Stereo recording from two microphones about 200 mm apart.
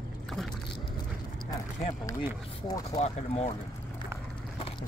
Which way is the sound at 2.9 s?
30° left (ahead or behind).